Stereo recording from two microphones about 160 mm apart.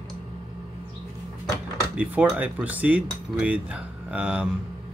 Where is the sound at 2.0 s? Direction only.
10° right (ahead or behind).